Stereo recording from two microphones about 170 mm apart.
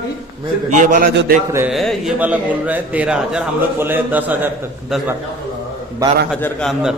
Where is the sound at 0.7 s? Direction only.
50° right (ahead or behind).